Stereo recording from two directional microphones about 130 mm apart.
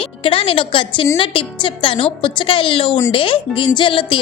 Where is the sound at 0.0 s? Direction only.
45° left (ahead or behind).